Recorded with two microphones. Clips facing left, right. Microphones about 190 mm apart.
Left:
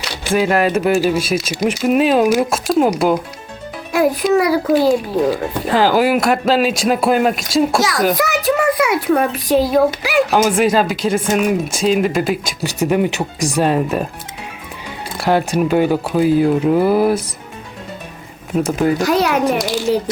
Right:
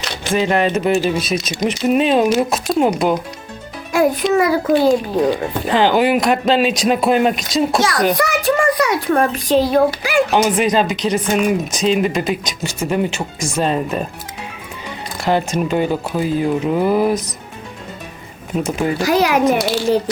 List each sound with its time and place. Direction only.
0.0 s a child's voice: 10° left (ahead or behind)
3.9 s a child's voice: centre (ahead or behind)
15.2 s speech: 10° left (ahead or behind)
18.6 s a child's voice: centre (ahead or behind)